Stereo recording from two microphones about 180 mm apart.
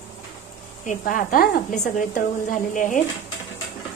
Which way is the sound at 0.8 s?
50° left (ahead or behind).